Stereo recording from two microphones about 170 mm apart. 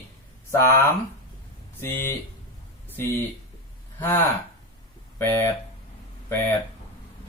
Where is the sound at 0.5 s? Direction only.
15° left (ahead or behind).